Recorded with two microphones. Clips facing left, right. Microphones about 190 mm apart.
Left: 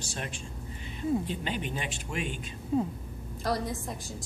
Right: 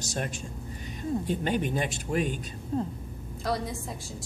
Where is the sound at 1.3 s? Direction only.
50° right (ahead or behind).